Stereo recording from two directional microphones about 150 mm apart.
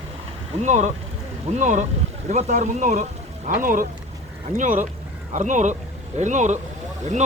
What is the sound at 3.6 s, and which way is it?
Speech, 65° right (ahead or behind).